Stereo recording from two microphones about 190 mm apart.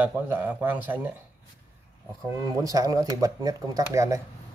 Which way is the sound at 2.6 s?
20° right (ahead or behind).